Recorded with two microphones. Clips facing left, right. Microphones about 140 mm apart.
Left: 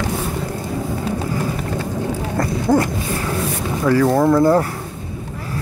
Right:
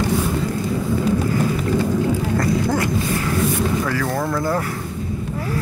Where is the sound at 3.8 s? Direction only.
25° left (ahead or behind).